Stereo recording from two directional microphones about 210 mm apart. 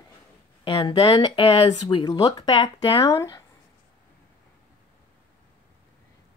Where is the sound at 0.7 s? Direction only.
20° left (ahead or behind).